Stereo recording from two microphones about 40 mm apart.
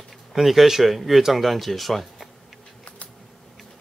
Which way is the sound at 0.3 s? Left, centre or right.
Centre.